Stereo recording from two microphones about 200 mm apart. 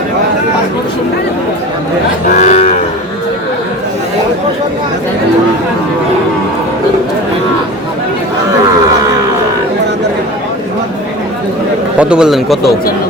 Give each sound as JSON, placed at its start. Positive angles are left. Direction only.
{"t": 2.4, "sound": "moo", "side_deg": 35}
{"t": 11.9, "sound": "speech", "side_deg": -5}